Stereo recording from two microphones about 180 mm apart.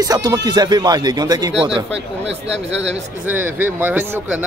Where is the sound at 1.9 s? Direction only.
85° right.